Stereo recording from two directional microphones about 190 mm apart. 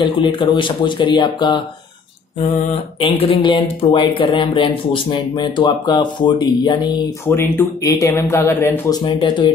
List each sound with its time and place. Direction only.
0.0 s speech: 25° left (ahead or behind)
3.0 s speech: 30° left (ahead or behind)
7.2 s speech: 10° left (ahead or behind)
9.0 s speech: 25° left (ahead or behind)